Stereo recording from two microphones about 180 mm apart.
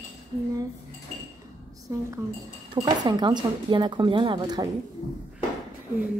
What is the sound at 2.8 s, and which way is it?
Speech, 20° right (ahead or behind).